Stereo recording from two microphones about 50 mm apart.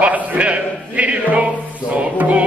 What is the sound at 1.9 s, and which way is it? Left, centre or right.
Music, right.